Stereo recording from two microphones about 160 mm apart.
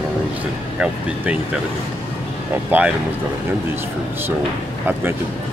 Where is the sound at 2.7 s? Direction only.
10° right (ahead or behind).